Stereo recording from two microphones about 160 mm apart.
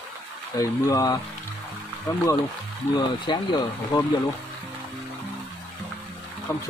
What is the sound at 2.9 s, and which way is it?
Speech, 25° left (ahead or behind).